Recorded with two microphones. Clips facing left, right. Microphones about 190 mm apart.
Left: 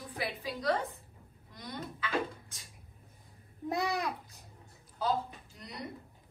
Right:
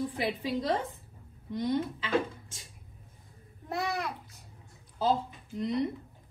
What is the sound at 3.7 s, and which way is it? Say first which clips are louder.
Babbling: even; 15° left (ahead or behind).